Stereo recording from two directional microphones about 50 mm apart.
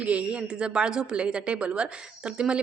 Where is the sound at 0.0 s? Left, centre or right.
Right.